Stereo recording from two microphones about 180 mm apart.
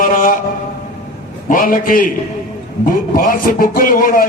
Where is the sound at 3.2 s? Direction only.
50° left (ahead or behind).